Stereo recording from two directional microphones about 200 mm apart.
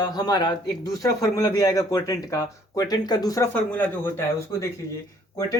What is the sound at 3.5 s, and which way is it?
Speech, 10° left (ahead or behind).